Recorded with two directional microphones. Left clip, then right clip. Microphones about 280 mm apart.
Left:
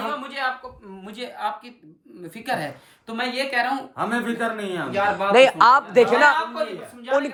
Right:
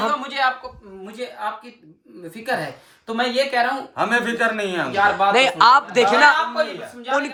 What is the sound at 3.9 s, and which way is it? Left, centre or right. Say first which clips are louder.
Speech: right 5 dB; right.